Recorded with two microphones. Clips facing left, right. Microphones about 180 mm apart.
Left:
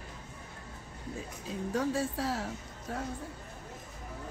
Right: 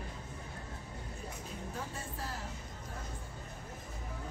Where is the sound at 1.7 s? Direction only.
90° left.